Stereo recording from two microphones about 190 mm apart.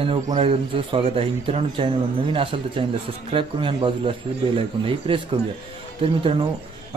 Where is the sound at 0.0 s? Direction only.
30° right (ahead or behind).